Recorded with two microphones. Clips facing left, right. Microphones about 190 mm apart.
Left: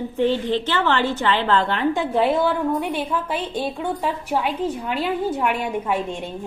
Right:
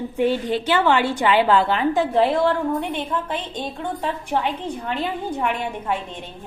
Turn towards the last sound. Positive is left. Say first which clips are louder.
# left 3 dB
turn(degrees=10)  # may be behind; listen again after turning